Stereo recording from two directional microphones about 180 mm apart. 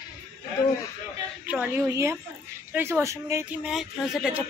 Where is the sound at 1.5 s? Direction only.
10° right (ahead or behind).